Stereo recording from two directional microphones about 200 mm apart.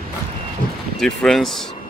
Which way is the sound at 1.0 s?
5° left (ahead or behind).